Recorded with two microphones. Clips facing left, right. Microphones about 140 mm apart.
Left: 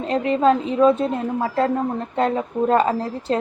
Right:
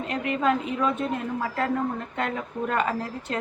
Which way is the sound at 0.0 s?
30° left (ahead or behind).